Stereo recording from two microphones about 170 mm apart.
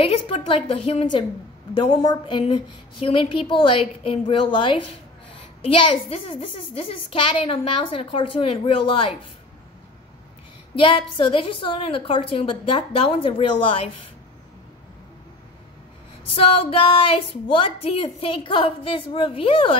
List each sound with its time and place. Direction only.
0.0 s a woman's voice: 35° left (ahead or behind)
10.8 s a woman's voice: 30° left (ahead or behind)
16.3 s a woman's voice: 35° left (ahead or behind)